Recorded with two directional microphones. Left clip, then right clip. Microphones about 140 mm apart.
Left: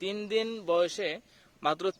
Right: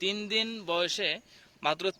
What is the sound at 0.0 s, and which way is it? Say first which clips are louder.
A man's voice: right 1 dB; 50° left (ahead or behind).